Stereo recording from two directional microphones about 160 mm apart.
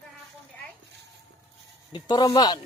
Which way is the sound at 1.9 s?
25° left (ahead or behind).